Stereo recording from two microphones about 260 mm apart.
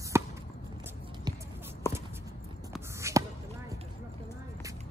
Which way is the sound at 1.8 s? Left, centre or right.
Centre.